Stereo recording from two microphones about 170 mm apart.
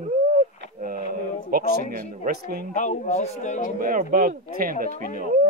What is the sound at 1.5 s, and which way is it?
Speech, 60° right (ahead or behind).